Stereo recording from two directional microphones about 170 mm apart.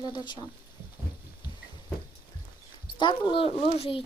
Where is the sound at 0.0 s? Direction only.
25° left (ahead or behind).